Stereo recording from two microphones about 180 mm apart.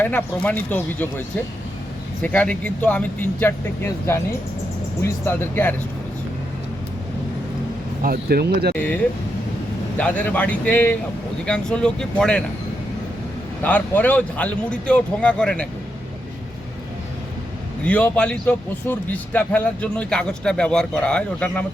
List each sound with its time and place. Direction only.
0.0 s a man's voice: 10° left (ahead or behind)
2.2 s a man's voice: 10° left (ahead or behind)
8.0 s speech: 55° right (ahead or behind)
8.7 s a man's voice: 10° left (ahead or behind)
10.2 s a man's voice: 10° left (ahead or behind)
13.6 s a man's voice: 10° left (ahead or behind)
17.8 s a man's voice: 10° left (ahead or behind)